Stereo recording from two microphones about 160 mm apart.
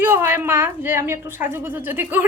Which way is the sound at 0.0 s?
15° right (ahead or behind).